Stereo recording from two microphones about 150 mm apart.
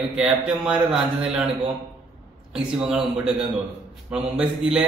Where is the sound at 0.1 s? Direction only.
5° right (ahead or behind).